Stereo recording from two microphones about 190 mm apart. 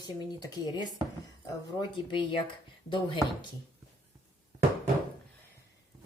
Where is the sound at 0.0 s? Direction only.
20° left (ahead or behind).